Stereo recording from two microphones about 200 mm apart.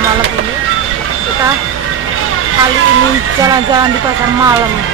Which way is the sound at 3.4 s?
20° right (ahead or behind).